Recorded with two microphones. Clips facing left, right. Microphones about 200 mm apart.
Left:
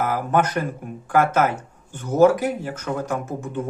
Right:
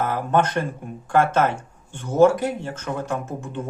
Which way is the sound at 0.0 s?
10° left (ahead or behind).